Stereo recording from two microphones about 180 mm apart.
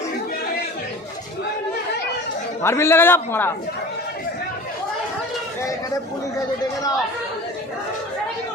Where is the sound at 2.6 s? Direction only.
15° left (ahead or behind).